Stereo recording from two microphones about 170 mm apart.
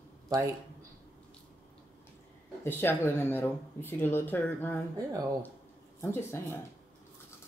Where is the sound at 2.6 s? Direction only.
10° left (ahead or behind).